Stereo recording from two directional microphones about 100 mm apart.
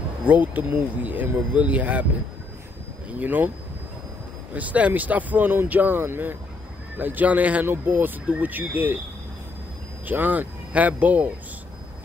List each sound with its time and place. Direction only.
0.2 s speech: 15° right (ahead or behind)
3.2 s speech: 20° right (ahead or behind)
4.6 s speech: 15° right (ahead or behind)
10.0 s speech: 15° right (ahead or behind)